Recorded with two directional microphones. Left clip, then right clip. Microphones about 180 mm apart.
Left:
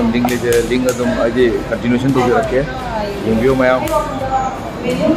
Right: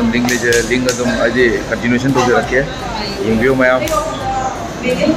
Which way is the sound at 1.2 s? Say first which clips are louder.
Right 2 dB; centre (ahead or behind).